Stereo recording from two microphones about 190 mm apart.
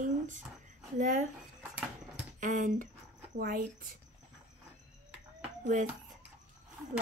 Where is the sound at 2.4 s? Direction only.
45° right (ahead or behind).